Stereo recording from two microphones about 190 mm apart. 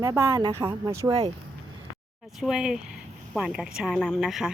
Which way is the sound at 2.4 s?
5° right (ahead or behind).